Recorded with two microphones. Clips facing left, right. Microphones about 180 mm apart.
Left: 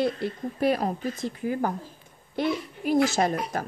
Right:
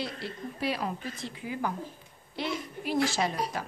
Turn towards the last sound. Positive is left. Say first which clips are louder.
# left 6 dB
turn(degrees=45)  # may be behind; listen again after turning